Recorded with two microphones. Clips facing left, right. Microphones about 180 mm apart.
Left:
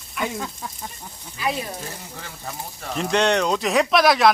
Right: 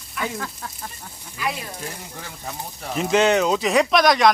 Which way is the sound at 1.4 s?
25° left (ahead or behind).